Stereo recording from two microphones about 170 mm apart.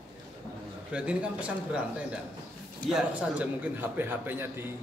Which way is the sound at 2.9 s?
5° right (ahead or behind).